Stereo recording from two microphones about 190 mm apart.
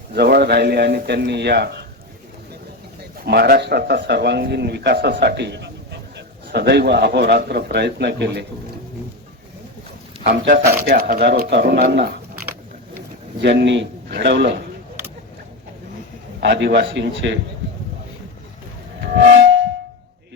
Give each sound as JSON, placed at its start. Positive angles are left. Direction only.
{"t": 0.1, "sound": "a man's voice", "side_deg": -60}
{"t": 3.2, "sound": "a man's voice", "side_deg": -55}
{"t": 10.3, "sound": "a man's voice", "side_deg": -60}
{"t": 13.4, "sound": "a man's voice", "side_deg": -65}
{"t": 16.4, "sound": "a man's voice", "side_deg": -65}